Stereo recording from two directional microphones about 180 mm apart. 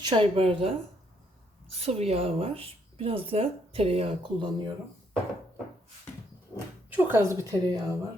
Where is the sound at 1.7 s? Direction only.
35° right (ahead or behind).